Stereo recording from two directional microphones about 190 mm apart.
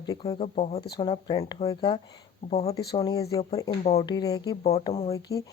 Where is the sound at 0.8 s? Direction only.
25° left (ahead or behind).